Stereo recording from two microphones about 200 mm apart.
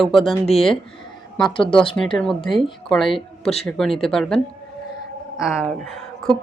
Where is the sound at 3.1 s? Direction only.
30° left (ahead or behind).